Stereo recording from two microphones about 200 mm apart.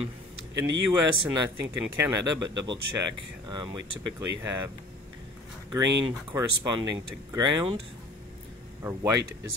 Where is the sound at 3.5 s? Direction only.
20° right (ahead or behind).